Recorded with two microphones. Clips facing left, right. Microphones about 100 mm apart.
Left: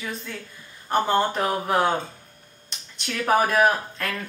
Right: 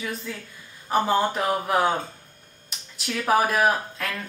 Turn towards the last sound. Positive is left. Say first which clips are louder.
# left 2 dB
turn(degrees=0)  # may be behind; listen again after turning